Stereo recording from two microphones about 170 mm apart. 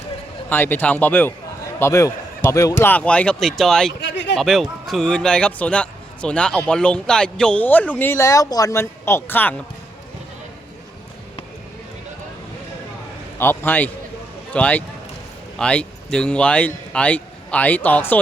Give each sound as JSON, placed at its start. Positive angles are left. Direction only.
{"t": 0.5, "sound": "a man's voice", "side_deg": 10}
{"t": 4.0, "sound": "a sound", "side_deg": 90}
{"t": 4.4, "sound": "a man's voice", "side_deg": 0}
{"t": 13.4, "sound": "a man's voice", "side_deg": 15}